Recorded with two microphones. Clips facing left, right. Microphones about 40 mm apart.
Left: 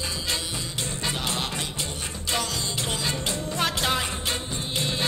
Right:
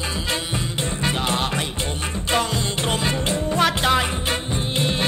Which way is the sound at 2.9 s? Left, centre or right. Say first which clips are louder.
Right 7 dB; right.